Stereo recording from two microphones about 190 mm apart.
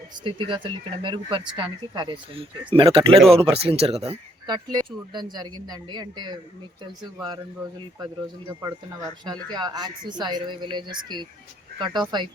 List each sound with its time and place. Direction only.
0.3 s speech: 25° right (ahead or behind)
8.6 s speech: 20° right (ahead or behind)